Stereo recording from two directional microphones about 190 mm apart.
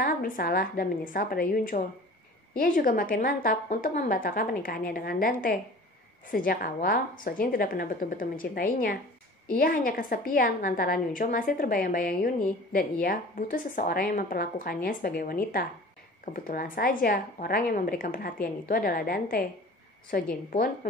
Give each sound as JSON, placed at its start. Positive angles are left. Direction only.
{"t": 0.0, "sound": "a woman's voice", "side_deg": 50}